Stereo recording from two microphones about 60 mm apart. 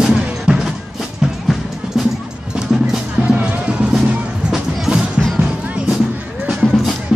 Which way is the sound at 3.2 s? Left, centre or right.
Right.